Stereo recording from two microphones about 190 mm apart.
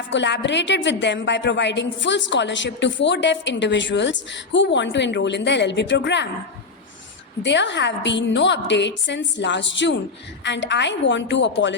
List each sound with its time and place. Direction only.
0.1 s a woman's voice: 70° left (ahead or behind)
7.4 s a woman's voice: 70° left (ahead or behind)